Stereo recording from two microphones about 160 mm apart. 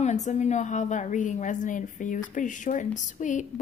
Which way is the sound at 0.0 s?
50° left (ahead or behind).